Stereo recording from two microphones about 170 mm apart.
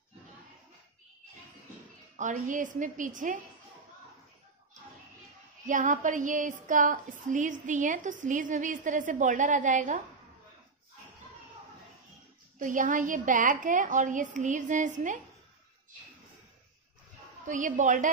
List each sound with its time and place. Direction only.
2.1 s a woman's voice: 50° right (ahead or behind)
5.7 s a woman's voice: 50° right (ahead or behind)
12.5 s a woman's voice: 50° right (ahead or behind)
17.5 s a woman's voice: 50° right (ahead or behind)